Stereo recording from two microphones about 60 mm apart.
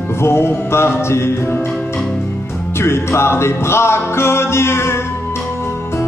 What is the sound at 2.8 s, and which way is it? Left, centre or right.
Music, left.